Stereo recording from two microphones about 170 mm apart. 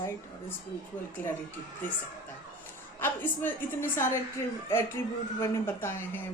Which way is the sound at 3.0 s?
10° left (ahead or behind).